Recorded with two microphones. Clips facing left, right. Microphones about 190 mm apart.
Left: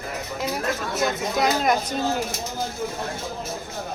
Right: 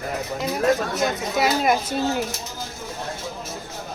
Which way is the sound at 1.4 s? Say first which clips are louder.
Right 1 dB; 5° right (ahead or behind).